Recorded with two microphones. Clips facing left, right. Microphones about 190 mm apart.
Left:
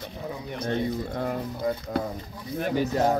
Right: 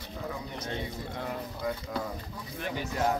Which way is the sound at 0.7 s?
45° left (ahead or behind).